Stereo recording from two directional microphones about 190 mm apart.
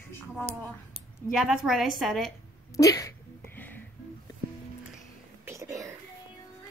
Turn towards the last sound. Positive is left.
turn(degrees=-15)  # may be behind; listen again after turning